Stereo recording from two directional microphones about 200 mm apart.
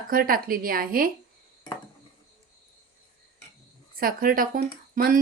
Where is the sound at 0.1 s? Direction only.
45° right (ahead or behind).